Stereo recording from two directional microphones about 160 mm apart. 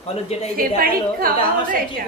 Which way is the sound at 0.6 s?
65° right (ahead or behind).